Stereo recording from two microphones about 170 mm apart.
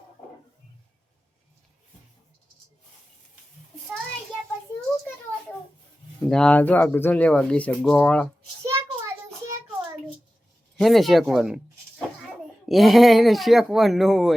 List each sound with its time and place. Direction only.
6.2 s speech: 5° left (ahead or behind)
8.6 s child singing: 15° right (ahead or behind)
10.8 s speech: centre (ahead or behind)